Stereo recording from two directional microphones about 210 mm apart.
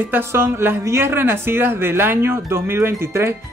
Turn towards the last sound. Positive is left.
turn(degrees=-10)  # may be behind; listen again after turning